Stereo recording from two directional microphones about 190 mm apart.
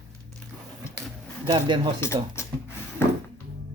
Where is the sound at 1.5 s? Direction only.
25° right (ahead or behind).